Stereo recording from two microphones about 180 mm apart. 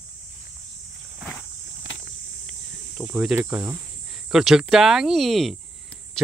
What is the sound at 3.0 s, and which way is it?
Speech, 5° right (ahead or behind).